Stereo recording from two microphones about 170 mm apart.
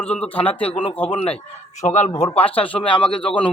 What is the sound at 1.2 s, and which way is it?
Speech, 40° left (ahead or behind).